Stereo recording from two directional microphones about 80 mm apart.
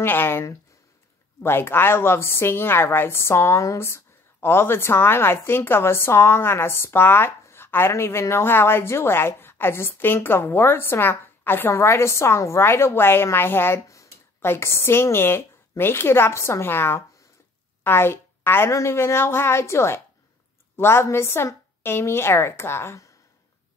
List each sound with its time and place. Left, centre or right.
0.0 s a woman's voice: left